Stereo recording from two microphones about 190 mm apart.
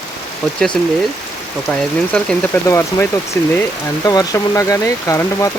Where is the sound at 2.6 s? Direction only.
15° left (ahead or behind).